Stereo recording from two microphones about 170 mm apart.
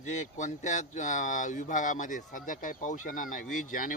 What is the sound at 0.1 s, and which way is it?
Speech, 45° left (ahead or behind).